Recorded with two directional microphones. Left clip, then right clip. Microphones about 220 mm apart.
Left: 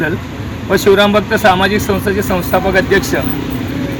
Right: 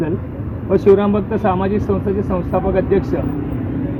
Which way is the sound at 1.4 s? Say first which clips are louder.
Left 8 dB; 15° left (ahead or behind).